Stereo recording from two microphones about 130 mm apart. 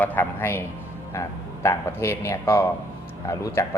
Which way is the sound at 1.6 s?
20° left (ahead or behind).